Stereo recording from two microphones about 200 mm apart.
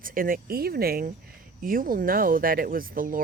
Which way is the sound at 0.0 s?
45° right (ahead or behind).